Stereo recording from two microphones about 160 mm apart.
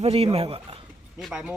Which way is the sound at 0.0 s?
40° right (ahead or behind).